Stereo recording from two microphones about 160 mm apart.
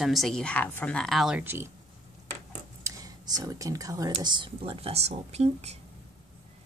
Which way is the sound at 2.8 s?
20° right (ahead or behind).